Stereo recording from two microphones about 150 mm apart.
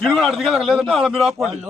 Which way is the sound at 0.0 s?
Centre (ahead or behind).